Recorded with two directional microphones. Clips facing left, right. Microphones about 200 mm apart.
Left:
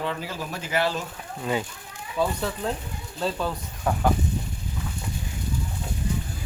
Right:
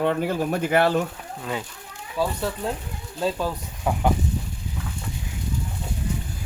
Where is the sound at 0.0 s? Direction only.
55° right (ahead or behind).